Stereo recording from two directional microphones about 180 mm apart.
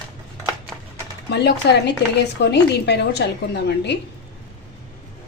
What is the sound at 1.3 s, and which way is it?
A woman's voice, 70° left (ahead or behind).